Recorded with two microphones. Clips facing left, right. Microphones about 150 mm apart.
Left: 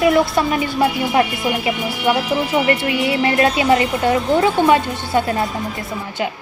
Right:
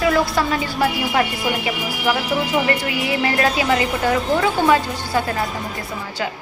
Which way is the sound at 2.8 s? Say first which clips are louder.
Left 3 dB; 25° left (ahead or behind).